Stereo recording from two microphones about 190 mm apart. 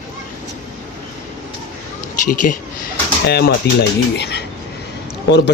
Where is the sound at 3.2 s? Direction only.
60° left (ahead or behind).